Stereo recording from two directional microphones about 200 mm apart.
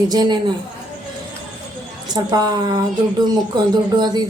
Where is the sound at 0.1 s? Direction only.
20° right (ahead or behind).